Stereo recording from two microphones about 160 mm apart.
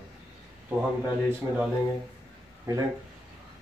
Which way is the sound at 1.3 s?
10° right (ahead or behind).